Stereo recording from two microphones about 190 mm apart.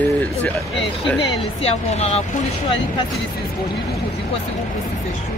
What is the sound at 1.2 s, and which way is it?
Speech, 35° left (ahead or behind).